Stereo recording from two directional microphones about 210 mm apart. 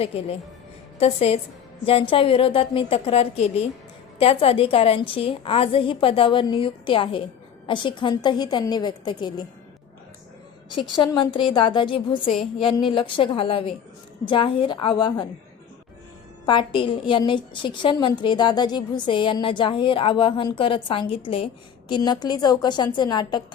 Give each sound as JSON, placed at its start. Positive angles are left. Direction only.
{"t": 0.9, "sound": "a woman's voice", "side_deg": 30}
{"t": 10.7, "sound": "a woman's voice", "side_deg": 20}
{"t": 12.3, "sound": "a woman's voice", "side_deg": 0}
{"t": 12.6, "sound": "a woman's voice", "side_deg": 25}
{"t": 16.5, "sound": "a woman's voice", "side_deg": 25}